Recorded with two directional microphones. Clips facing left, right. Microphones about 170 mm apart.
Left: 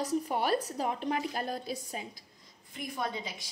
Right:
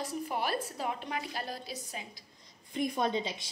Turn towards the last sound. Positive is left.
turn(degrees=-25)  # may be behind; listen again after turning